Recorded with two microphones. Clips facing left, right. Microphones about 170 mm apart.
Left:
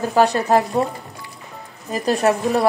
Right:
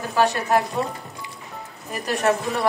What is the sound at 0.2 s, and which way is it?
Speech, 35° left (ahead or behind).